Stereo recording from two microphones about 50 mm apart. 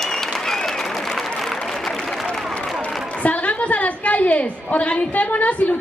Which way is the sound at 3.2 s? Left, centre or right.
Left.